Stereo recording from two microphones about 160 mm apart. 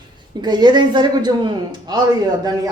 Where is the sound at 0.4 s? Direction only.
25° right (ahead or behind).